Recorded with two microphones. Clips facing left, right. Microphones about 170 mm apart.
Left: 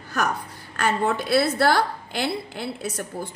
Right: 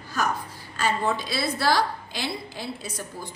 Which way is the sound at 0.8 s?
60° left (ahead or behind).